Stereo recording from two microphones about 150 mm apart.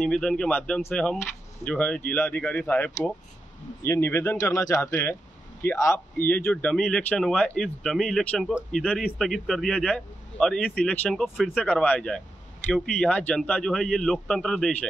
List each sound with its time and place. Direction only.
0.0 s a man's voice: 5° left (ahead or behind)
11.6 s a man's voice: 10° left (ahead or behind)